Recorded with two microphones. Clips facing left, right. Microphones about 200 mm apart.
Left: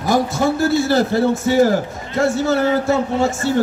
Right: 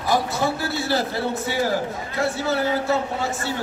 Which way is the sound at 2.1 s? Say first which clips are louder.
Left 7 dB; 45° left (ahead or behind).